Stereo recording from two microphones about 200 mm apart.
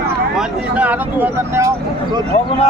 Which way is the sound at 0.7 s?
10° right (ahead or behind).